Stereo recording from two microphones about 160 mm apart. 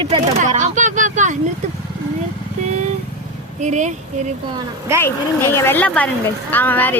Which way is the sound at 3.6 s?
50° right (ahead or behind).